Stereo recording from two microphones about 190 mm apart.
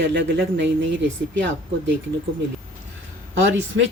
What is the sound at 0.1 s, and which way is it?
Speech, 70° right (ahead or behind).